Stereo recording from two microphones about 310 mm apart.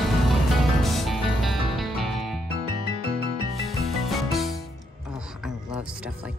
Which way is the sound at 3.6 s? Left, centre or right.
Centre.